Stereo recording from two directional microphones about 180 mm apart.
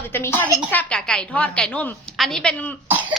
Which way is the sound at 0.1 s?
10° left (ahead or behind).